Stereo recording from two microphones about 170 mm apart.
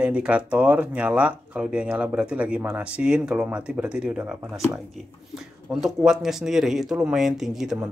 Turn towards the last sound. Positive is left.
turn(degrees=0)  # may be behind; listen again after turning